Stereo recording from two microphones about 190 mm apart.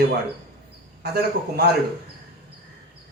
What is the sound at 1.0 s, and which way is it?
Speech, 55° right (ahead or behind).